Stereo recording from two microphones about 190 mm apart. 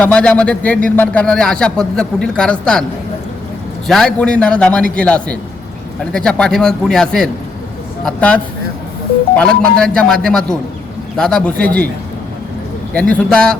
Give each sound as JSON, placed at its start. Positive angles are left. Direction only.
{"t": 0.0, "sound": "a man's voice", "side_deg": 5}
{"t": 3.8, "sound": "a man's voice", "side_deg": 0}
{"t": 9.4, "sound": "a man's voice", "side_deg": 5}
{"t": 12.9, "sound": "speech", "side_deg": 5}